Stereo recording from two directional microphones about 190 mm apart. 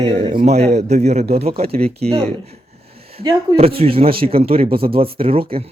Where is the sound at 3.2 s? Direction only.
30° right (ahead or behind).